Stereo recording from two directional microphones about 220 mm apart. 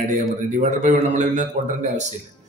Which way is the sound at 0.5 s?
30° right (ahead or behind).